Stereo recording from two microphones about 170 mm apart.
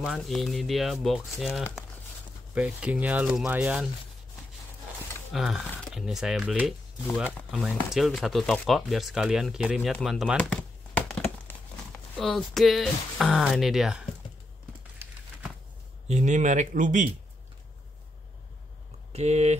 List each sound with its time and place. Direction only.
0.0 s speech: centre (ahead or behind)
5.3 s speech: centre (ahead or behind)
7.9 s speech: centre (ahead or behind)
11.0 s crumpling: 5° left (ahead or behind)
16.1 s speech: 45° right (ahead or behind)
19.1 s speech: 40° right (ahead or behind)